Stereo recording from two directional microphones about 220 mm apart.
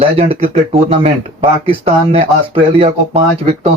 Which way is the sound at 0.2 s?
25° right (ahead or behind).